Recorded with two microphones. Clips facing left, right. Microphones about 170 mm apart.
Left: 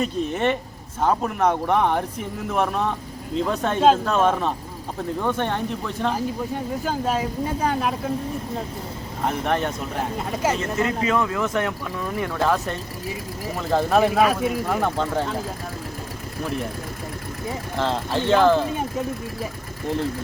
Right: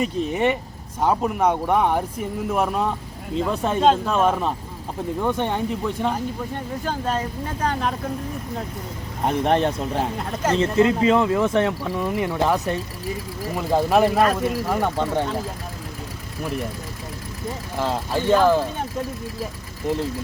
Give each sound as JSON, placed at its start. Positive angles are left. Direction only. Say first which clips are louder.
{"t": 0.0, "sound": "speech", "louder": "right 1 dB", "side_deg": -10}
{"t": 6.1, "sound": "speech", "louder": "left 2 dB", "side_deg": 5}
{"t": 9.2, "sound": "speech", "louder": "right 4 dB", "side_deg": -30}
{"t": 10.2, "sound": "speech", "louder": "right 1 dB", "side_deg": 5}
{"t": 10.6, "sound": "speech", "louder": "right 6 dB", "side_deg": -25}
{"t": 11.9, "sound": "speech", "louder": "right 2 dB", "side_deg": -20}
{"t": 13.6, "sound": "speech", "louder": "right 1 dB", "side_deg": -5}
{"t": 17.7, "sound": "speech", "louder": "even", "side_deg": -10}